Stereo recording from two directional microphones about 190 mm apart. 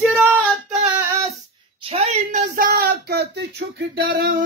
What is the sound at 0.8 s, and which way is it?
Female singing, 10° right (ahead or behind).